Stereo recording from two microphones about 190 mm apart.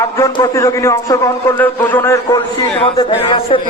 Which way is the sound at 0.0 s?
20° left (ahead or behind).